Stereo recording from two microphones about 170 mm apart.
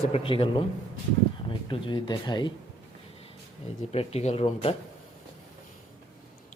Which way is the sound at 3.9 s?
40° left (ahead or behind).